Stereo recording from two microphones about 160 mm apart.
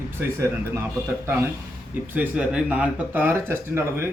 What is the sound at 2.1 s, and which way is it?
Speech, 10° right (ahead or behind).